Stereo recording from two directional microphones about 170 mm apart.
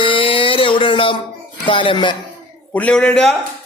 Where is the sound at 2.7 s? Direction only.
5° left (ahead or behind).